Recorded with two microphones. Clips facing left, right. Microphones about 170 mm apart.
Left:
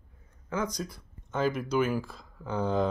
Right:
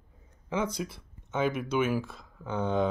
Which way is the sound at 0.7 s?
5° right (ahead or behind).